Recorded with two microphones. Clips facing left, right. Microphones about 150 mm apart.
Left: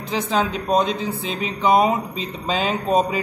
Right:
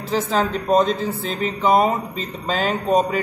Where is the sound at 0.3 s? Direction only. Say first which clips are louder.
Right 1 dB; centre (ahead or behind).